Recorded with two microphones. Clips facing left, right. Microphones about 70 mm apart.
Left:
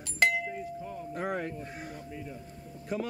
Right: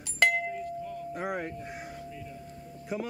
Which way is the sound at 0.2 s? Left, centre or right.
Right.